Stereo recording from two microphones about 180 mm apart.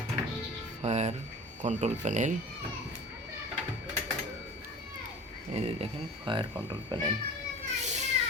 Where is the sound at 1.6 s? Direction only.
40° right (ahead or behind).